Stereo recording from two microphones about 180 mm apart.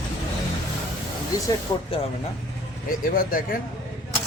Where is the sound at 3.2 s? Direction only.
50° left (ahead or behind).